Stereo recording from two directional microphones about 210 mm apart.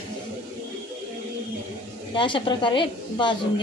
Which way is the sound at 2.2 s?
25° left (ahead or behind).